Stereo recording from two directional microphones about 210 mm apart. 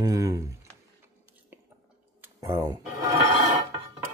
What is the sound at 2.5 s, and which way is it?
Speech, 15° right (ahead or behind).